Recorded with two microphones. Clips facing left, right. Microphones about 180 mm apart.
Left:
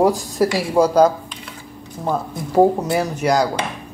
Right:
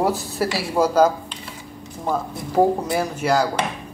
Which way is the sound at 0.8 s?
10° right (ahead or behind).